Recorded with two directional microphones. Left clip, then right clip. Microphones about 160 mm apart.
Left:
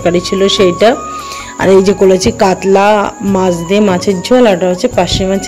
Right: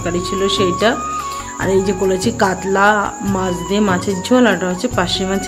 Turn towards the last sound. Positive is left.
turn(degrees=25)  # may be behind; listen again after turning